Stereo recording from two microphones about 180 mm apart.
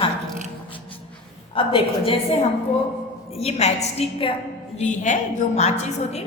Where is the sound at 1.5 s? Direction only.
30° left (ahead or behind).